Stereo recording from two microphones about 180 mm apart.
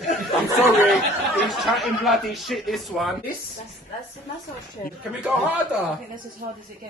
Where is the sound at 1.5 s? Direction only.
Centre (ahead or behind).